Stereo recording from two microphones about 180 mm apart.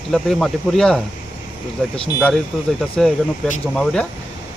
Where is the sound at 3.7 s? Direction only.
5° left (ahead or behind).